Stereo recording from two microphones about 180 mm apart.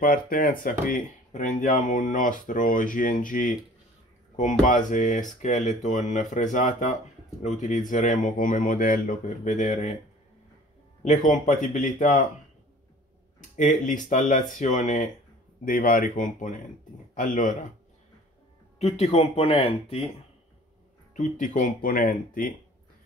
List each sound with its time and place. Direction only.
0.0 s speech: 50° left (ahead or behind)
11.0 s speech: 45° left (ahead or behind)
13.6 s speech: 45° left (ahead or behind)
18.8 s speech: 35° left (ahead or behind)
21.1 s speech: 45° left (ahead or behind)